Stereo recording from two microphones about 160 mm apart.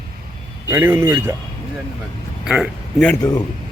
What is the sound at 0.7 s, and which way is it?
Speech, 15° right (ahead or behind).